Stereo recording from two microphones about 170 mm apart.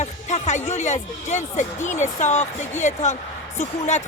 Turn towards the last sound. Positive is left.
turn(degrees=45)  # may be behind; listen again after turning